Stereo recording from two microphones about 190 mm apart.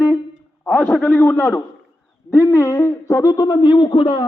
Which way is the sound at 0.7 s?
5° left (ahead or behind).